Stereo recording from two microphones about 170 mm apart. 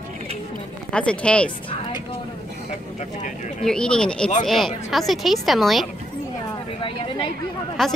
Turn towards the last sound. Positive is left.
turn(degrees=0)  # may be behind; listen again after turning